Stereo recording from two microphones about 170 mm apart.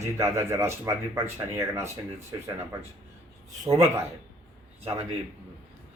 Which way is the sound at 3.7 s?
20° right (ahead or behind).